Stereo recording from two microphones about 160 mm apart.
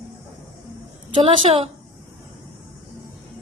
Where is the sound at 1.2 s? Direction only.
35° right (ahead or behind).